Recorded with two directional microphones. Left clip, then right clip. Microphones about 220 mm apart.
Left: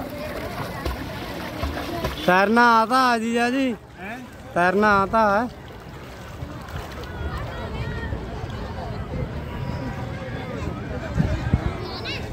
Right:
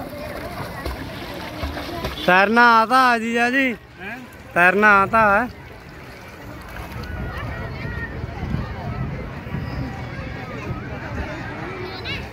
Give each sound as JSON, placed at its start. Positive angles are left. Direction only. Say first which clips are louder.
{"t": 1.8, "sound": "music", "louder": "left 1 dB", "side_deg": 15}
{"t": 2.2, "sound": "speech", "louder": "right 3 dB", "side_deg": 5}
{"t": 11.8, "sound": "a sound", "louder": "right 1 dB", "side_deg": 55}